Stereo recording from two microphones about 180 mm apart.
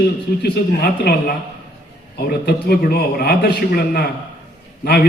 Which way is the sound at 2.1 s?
60° left (ahead or behind).